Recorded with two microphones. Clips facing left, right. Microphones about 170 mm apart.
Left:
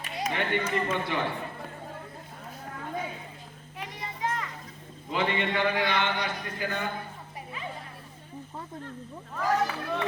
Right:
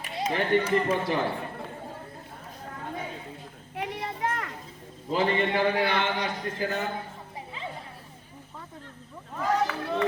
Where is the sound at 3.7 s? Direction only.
65° right (ahead or behind).